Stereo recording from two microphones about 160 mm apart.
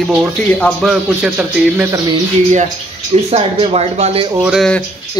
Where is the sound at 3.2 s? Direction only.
40° right (ahead or behind).